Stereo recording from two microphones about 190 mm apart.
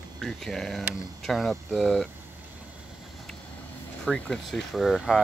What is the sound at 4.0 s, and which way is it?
Speech, 5° left (ahead or behind).